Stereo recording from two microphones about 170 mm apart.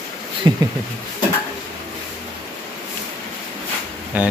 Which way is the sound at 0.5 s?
25° right (ahead or behind).